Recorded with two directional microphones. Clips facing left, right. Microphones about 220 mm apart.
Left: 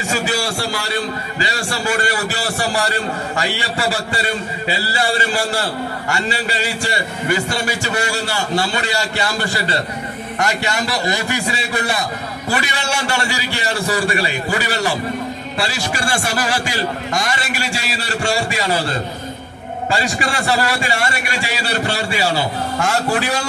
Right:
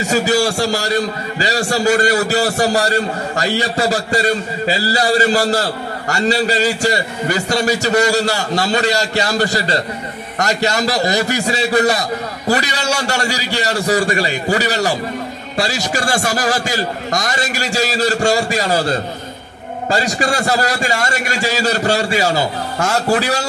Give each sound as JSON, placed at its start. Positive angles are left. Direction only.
{"t": 0.0, "sound": "a man's voice", "side_deg": -40}